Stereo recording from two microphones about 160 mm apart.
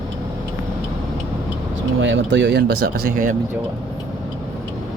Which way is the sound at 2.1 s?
90° right.